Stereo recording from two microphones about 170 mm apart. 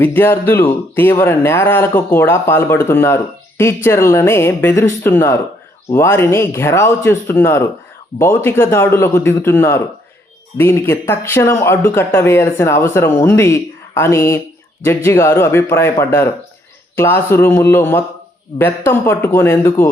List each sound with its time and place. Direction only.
0.0 s speech: 10° left (ahead or behind)